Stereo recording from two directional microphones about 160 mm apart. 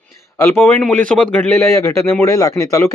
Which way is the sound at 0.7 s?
5° left (ahead or behind).